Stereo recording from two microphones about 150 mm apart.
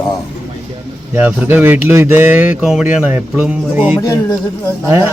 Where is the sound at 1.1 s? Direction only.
10° right (ahead or behind).